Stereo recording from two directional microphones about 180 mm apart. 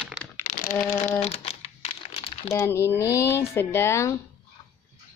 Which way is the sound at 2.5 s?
15° left (ahead or behind).